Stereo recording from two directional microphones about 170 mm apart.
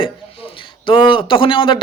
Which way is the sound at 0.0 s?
30° left (ahead or behind).